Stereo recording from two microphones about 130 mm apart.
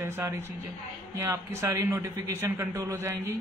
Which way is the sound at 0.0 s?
20° right (ahead or behind).